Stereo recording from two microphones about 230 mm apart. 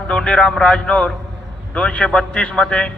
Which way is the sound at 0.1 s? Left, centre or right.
Centre.